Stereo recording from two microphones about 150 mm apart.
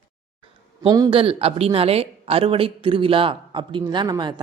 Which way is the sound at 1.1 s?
40° right (ahead or behind).